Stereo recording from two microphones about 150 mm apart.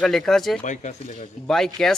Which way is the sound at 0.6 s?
55° left (ahead or behind).